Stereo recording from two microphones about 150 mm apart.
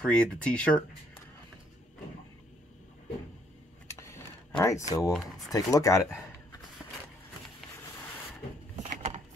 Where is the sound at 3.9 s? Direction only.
20° left (ahead or behind).